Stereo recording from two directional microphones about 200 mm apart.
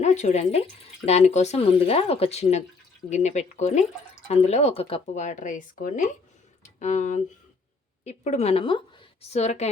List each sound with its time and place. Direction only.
0.0 s speech: 35° left (ahead or behind)